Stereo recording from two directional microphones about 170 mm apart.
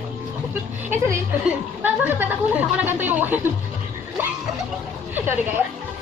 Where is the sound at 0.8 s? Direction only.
15° right (ahead or behind).